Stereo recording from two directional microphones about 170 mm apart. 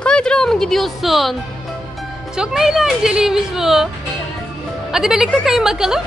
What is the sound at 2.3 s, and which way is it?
A woman's voice, 5° right (ahead or behind).